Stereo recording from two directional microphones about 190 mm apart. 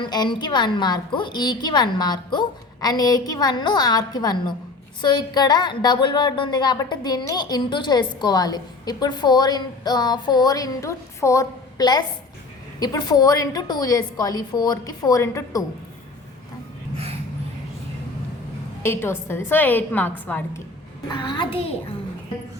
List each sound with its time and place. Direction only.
0.0 s speech: 25° left (ahead or behind)
18.8 s a woman's voice: 10° left (ahead or behind)
21.1 s speech: 25° left (ahead or behind)